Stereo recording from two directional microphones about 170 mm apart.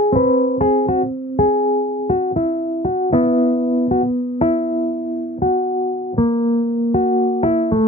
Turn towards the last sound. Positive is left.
turn(degrees=35)  # may be behind; listen again after turning